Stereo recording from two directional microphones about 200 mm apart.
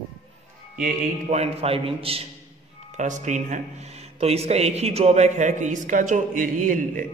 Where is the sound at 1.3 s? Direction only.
30° right (ahead or behind).